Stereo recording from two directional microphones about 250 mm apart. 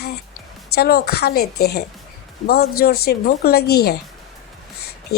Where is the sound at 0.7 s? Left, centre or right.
Left.